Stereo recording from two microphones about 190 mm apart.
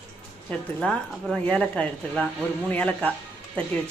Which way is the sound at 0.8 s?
Centre (ahead or behind).